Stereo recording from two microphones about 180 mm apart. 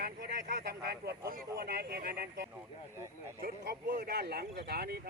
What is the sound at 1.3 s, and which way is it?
Speech, 55° right (ahead or behind).